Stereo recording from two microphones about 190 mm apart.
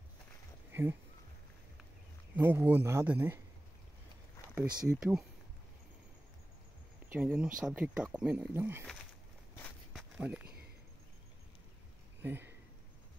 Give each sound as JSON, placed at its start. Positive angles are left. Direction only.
{"t": 0.7, "sound": "a sound", "side_deg": -10}
{"t": 2.3, "sound": "speech", "side_deg": -10}
{"t": 4.8, "sound": "speech", "side_deg": 0}
{"t": 7.1, "sound": "speech", "side_deg": -10}
{"t": 10.1, "sound": "speech", "side_deg": -5}
{"t": 12.2, "sound": "a sound", "side_deg": -10}